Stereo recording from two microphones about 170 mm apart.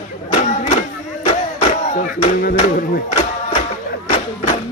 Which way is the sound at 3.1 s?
40° left (ahead or behind).